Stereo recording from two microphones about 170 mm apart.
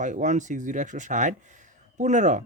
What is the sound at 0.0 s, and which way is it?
Speech, 45° right (ahead or behind).